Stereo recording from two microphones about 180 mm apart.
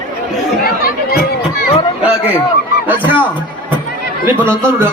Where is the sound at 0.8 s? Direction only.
60° left (ahead or behind).